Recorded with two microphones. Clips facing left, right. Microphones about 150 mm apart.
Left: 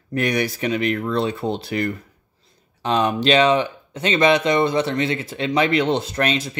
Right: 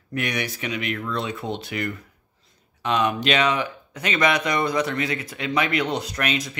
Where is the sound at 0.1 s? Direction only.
35° left (ahead or behind).